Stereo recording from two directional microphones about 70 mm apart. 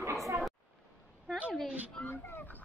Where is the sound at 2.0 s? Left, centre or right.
Left.